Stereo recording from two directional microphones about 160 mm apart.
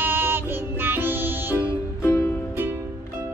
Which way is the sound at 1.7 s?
15° left (ahead or behind).